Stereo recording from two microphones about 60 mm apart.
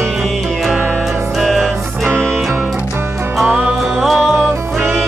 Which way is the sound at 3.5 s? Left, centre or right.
Right.